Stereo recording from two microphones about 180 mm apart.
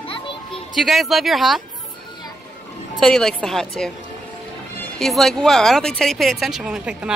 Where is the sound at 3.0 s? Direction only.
Centre (ahead or behind).